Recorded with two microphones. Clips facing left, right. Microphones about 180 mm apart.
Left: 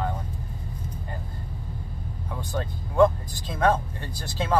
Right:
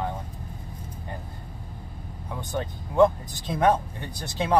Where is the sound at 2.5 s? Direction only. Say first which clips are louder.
Right 2 dB; 20° right (ahead or behind).